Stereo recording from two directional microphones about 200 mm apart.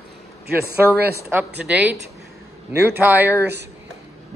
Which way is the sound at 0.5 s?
55° right (ahead or behind).